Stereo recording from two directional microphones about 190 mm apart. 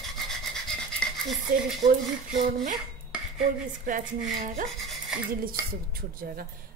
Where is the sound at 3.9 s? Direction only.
45° right (ahead or behind).